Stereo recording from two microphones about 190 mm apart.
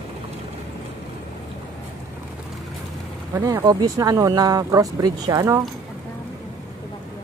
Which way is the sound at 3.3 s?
15° right (ahead or behind).